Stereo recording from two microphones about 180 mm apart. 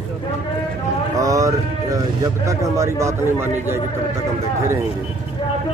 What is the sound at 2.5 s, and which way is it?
Speech, 15° right (ahead or behind).